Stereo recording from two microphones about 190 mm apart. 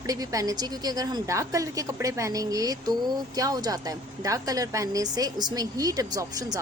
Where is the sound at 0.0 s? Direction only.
20° right (ahead or behind).